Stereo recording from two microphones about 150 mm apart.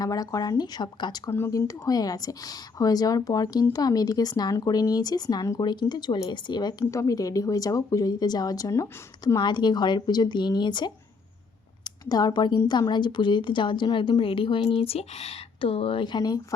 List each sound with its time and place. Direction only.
0.0 s speech: 25° left (ahead or behind)
12.0 s a woman's voice: 25° left (ahead or behind)